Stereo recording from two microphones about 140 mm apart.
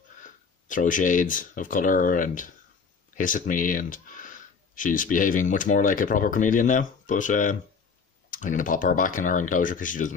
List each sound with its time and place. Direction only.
0.2 s speech: 70° left (ahead or behind)